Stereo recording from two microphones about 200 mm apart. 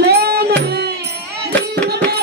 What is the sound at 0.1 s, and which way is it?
Music, 55° right (ahead or behind).